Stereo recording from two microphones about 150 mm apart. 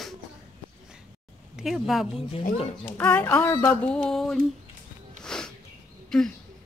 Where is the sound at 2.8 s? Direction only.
10° left (ahead or behind).